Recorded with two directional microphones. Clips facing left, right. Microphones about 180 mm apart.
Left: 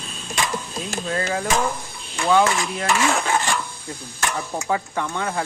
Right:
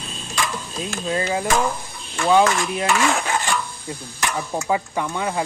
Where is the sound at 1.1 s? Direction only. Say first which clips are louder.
Right 2 dB; 15° right (ahead or behind).